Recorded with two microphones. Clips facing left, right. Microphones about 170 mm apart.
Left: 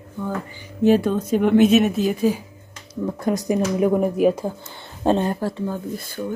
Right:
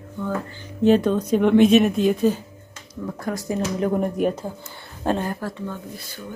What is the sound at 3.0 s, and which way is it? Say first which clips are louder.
A woman's voice: left 5 dB; 20° left (ahead or behind).